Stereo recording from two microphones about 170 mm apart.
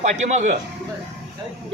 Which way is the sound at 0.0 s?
45° right (ahead or behind).